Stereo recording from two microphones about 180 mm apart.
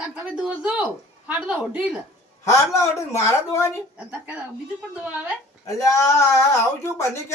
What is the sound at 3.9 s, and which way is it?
A woman's voice, 5° right (ahead or behind).